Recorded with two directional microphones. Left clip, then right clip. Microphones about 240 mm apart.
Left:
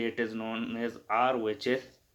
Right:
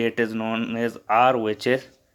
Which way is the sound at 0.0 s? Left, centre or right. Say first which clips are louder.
Right 9 dB; right.